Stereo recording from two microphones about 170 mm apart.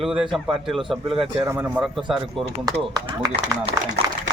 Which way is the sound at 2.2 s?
35° right (ahead or behind).